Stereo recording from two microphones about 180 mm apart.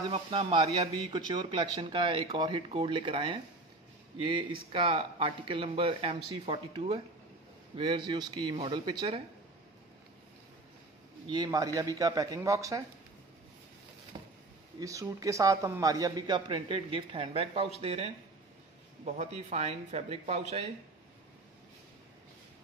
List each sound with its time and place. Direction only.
0.1 s a man's voice: 30° right (ahead or behind)
11.2 s a man's voice: 25° right (ahead or behind)
14.1 s a sound: 25° right (ahead or behind)
14.8 s a man's voice: 20° right (ahead or behind); by 20.6 s 35° right (ahead or behind)